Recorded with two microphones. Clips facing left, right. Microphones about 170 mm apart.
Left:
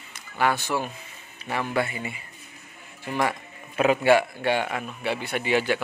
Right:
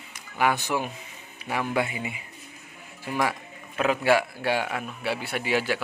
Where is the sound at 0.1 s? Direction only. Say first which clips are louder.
Even; 15° right (ahead or behind).